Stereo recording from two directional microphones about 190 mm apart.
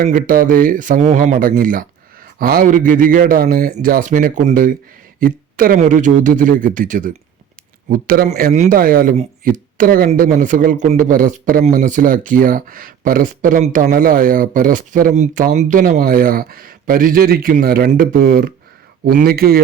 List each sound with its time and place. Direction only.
0.0 s speech: 50° right (ahead or behind)